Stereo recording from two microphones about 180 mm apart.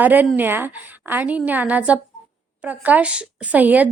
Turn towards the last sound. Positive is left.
turn(degrees=-10)  # may be behind; listen again after turning